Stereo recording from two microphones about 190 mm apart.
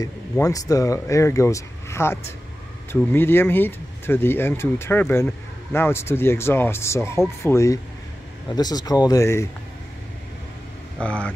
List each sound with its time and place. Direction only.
0.0 s speech: 20° left (ahead or behind)
11.0 s speech: 5° left (ahead or behind)